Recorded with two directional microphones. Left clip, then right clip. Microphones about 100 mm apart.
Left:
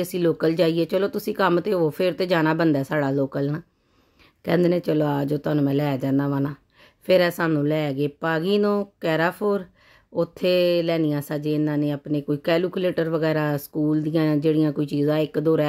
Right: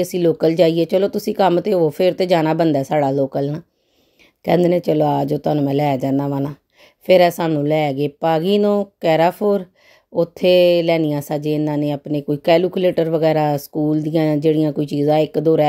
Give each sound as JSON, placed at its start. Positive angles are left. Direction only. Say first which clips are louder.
{"t": 0.0, "sound": "a woman's voice", "louder": "right 6 dB", "side_deg": -25}